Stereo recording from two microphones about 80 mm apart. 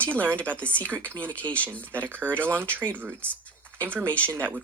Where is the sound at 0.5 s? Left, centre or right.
Centre.